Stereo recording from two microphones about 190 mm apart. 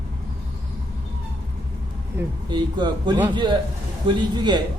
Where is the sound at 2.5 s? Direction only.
25° right (ahead or behind).